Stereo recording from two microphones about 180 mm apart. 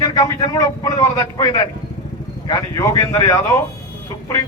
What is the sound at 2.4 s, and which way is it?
A man's voice, 20° left (ahead or behind).